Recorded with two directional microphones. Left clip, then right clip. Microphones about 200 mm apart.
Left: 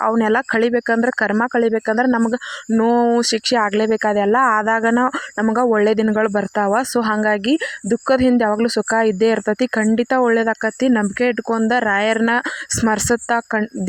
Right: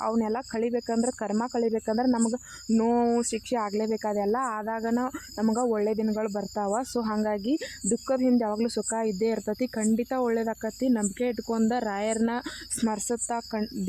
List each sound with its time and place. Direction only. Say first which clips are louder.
0.0 s speech: left 12 dB; 30° left (ahead or behind)
7.1 s speech: left 10 dB; 20° left (ahead or behind)
8.0 s speech: left 11 dB; 30° left (ahead or behind)
12.8 s speech: left 11 dB; 30° left (ahead or behind)